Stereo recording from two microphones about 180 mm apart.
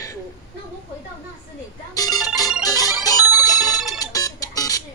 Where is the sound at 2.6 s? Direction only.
20° left (ahead or behind).